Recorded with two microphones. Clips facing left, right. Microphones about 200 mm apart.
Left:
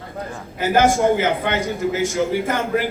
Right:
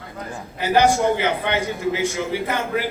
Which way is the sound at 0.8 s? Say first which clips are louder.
Left 1 dB; 50° left (ahead or behind).